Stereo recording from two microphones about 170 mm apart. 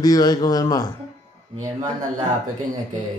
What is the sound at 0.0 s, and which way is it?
Speech, 20° left (ahead or behind).